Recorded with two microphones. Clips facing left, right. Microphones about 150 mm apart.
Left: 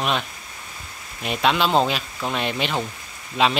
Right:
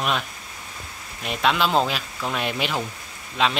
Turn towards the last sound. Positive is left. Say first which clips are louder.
# left 3 dB
turn(degrees=5)  # may be behind; listen again after turning